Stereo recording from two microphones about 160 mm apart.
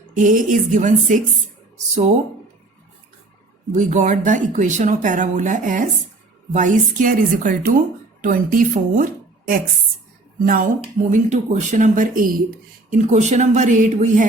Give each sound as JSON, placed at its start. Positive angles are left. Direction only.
{"t": 0.1, "sound": "speech", "side_deg": -55}
{"t": 3.7, "sound": "speech", "side_deg": -50}
{"t": 10.4, "sound": "speech", "side_deg": -60}
{"t": 12.9, "sound": "speech", "side_deg": -50}